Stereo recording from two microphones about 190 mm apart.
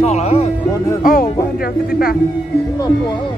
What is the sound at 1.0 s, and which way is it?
Speech, 45° left (ahead or behind).